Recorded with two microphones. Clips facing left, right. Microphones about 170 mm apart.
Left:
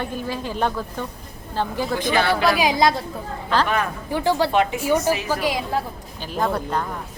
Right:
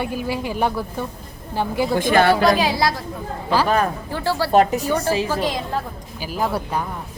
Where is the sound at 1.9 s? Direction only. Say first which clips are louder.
Right 5 dB; 50° right (ahead or behind).